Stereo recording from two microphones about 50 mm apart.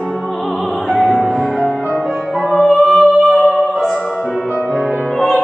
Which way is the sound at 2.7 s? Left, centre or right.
Centre.